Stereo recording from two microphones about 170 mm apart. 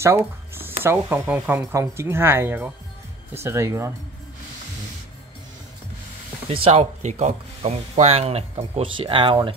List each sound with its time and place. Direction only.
0.0 s music: 15° right (ahead or behind)
0.8 s speech: 10° right (ahead or behind)
6.5 s speech: 35° right (ahead or behind)